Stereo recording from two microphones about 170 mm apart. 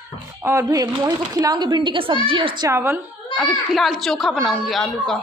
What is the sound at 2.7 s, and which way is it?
Speech, 15° right (ahead or behind).